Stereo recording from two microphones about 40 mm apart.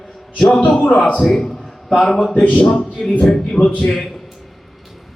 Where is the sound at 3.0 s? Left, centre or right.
Centre.